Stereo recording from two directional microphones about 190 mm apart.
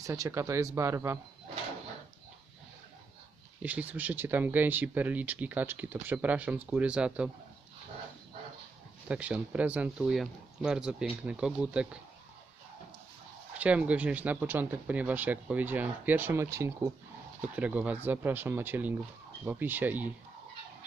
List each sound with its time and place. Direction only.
0.0 s speech: 15° right (ahead or behind)
3.6 s speech: 10° right (ahead or behind)
9.0 s speech: 5° right (ahead or behind)
13.6 s speech: 5° right (ahead or behind)